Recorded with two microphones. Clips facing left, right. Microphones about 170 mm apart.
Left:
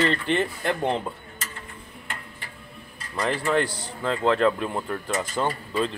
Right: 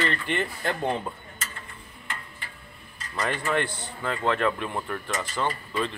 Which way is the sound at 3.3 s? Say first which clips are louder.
Left 4 dB; 35° left (ahead or behind).